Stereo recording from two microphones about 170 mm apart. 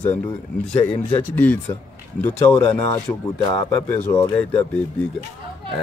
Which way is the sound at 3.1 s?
20° left (ahead or behind).